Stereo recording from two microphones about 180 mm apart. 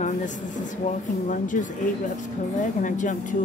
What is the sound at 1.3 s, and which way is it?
Music, 45° left (ahead or behind).